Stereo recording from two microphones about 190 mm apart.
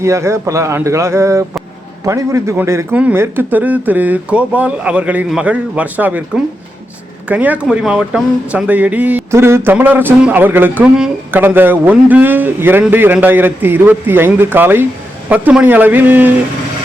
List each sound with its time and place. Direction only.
0.0 s speech: 15° right (ahead or behind)